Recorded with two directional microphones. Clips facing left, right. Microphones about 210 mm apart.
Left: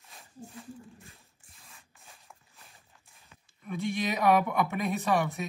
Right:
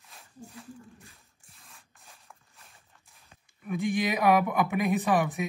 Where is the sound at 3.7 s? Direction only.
15° right (ahead or behind).